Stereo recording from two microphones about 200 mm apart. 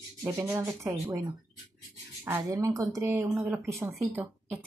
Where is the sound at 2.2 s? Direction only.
15° right (ahead or behind).